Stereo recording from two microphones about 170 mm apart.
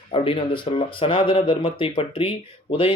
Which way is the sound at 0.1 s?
30° left (ahead or behind).